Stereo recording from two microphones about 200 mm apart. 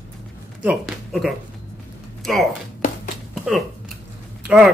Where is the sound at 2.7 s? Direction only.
40° left (ahead or behind).